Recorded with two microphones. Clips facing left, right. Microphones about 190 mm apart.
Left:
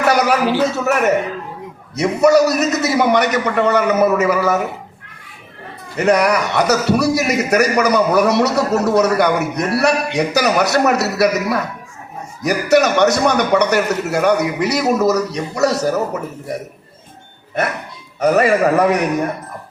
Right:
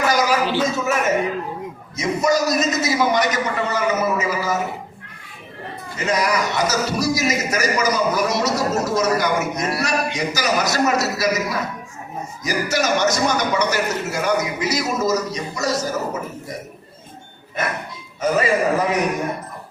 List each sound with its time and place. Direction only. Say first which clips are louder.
0.1 s a sound: left 7 dB; 65° left (ahead or behind)
0.6 s a man's voice: left 4 dB; 65° left (ahead or behind)
6.0 s a man's voice: left 6 dB; 65° left (ahead or behind)
18.2 s a man's voice: left 5 dB; 65° left (ahead or behind)